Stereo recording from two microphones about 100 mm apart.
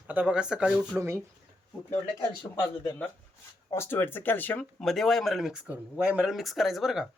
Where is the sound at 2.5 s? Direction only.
35° left (ahead or behind).